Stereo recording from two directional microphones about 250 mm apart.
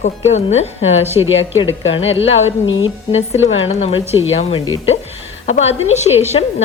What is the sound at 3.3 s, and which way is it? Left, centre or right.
Speech, left.